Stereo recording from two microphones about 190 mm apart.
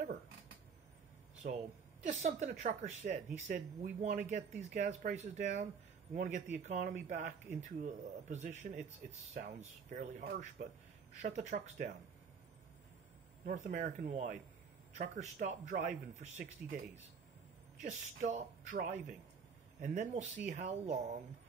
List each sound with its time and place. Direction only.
1.4 s speech: 50° right (ahead or behind)
2.2 s speech: 35° right (ahead or behind)
13.5 s speech: 40° right (ahead or behind)